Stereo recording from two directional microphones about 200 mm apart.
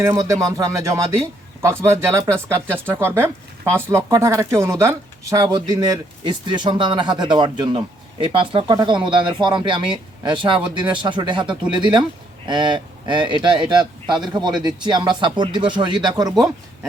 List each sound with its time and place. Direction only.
0.0 s speech: 15° right (ahead or behind)